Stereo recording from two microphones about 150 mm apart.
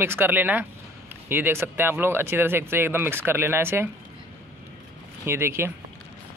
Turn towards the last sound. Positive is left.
turn(degrees=-15)  # may be behind; listen again after turning